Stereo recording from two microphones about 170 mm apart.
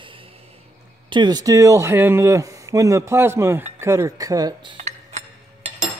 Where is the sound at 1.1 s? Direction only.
25° right (ahead or behind).